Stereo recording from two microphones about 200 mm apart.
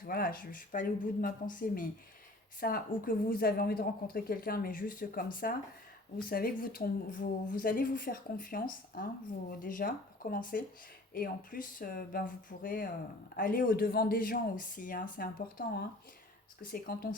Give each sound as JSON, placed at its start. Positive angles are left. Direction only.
{"t": 0.0, "sound": "a woman's voice", "side_deg": 45}